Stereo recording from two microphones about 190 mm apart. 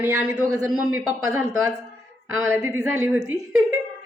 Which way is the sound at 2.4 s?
15° right (ahead or behind).